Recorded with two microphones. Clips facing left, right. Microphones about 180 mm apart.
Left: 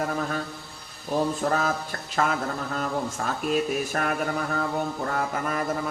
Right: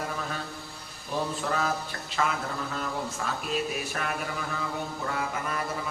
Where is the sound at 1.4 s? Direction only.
45° left (ahead or behind).